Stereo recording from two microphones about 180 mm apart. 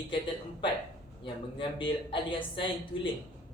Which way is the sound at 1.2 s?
30° left (ahead or behind).